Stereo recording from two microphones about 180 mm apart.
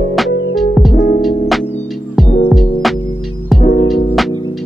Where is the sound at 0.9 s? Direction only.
45° left (ahead or behind).